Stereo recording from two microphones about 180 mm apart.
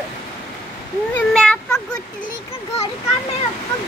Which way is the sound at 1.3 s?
5° left (ahead or behind).